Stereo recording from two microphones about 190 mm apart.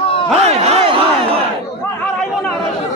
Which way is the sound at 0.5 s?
35° right (ahead or behind).